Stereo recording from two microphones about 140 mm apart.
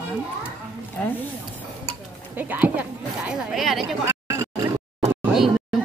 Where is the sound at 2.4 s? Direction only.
10° right (ahead or behind).